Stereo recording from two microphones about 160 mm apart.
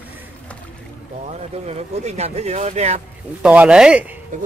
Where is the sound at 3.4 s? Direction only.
5° right (ahead or behind).